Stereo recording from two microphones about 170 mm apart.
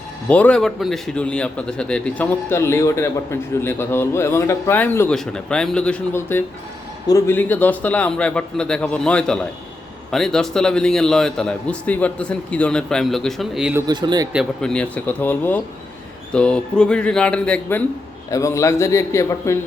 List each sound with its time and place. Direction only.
0.3 s a man's voice: 10° left (ahead or behind)
13.8 s speech: 25° right (ahead or behind)
14.3 s a man's voice: 5° left (ahead or behind)
18.3 s a man's voice: 20° left (ahead or behind)